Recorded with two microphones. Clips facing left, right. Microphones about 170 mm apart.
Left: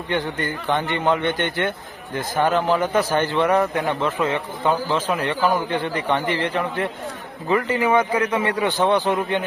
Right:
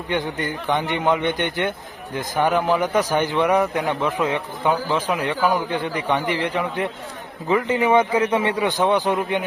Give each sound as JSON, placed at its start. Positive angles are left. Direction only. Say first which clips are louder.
{"t": 0.1, "sound": "a man's voice", "louder": "even", "side_deg": -15}